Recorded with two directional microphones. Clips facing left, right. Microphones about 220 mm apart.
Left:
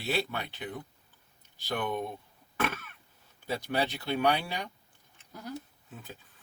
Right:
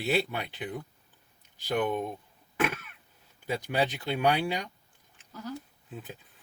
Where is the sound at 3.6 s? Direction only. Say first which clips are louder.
Right 2 dB; 15° right (ahead or behind).